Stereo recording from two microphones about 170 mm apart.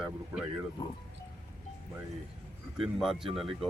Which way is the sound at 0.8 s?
25° left (ahead or behind).